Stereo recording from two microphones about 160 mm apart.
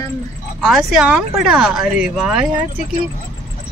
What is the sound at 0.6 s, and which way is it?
Speech, centre (ahead or behind).